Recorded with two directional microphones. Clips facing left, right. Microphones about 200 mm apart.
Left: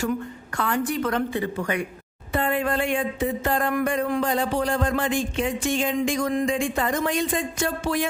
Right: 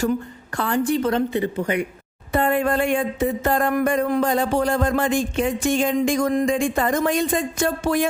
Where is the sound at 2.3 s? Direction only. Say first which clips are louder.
Right 4 dB; 45° right (ahead or behind).